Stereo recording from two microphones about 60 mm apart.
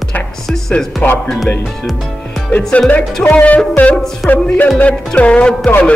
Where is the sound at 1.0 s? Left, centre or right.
Left.